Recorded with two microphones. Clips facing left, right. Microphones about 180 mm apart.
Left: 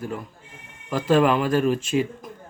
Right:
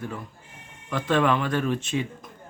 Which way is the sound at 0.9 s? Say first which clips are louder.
Left 4 dB; 10° left (ahead or behind).